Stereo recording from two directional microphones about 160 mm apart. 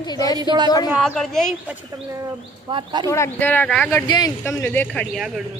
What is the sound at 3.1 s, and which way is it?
Speech, 15° left (ahead or behind).